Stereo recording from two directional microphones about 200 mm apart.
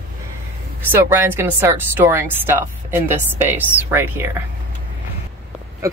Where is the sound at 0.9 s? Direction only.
10° right (ahead or behind).